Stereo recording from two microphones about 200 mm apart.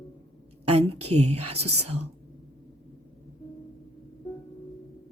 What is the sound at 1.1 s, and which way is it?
Speech, 30° right (ahead or behind).